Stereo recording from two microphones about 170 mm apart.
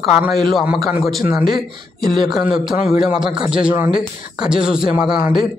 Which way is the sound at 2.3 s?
5° right (ahead or behind).